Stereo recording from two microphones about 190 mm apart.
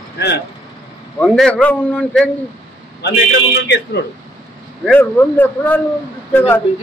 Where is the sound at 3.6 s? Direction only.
65° left (ahead or behind).